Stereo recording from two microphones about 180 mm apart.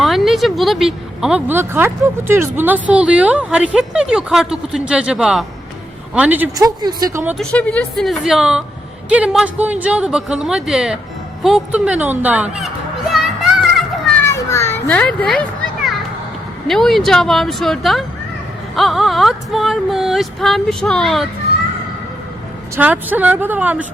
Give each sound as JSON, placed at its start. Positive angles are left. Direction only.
{"t": 0.0, "sound": "a woman's voice", "side_deg": 0}
{"t": 6.7, "sound": "a woman's voice", "side_deg": -20}
{"t": 7.3, "sound": "a woman's voice", "side_deg": 5}
{"t": 13.7, "sound": "children playing", "side_deg": 0}
{"t": 14.3, "sound": "children playing", "side_deg": 15}
{"t": 16.6, "sound": "speech", "side_deg": 0}
{"t": 22.7, "sound": "a woman's voice", "side_deg": -10}